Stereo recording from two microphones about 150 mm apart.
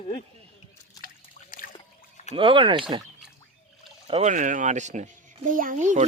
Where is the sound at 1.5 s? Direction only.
65° left (ahead or behind).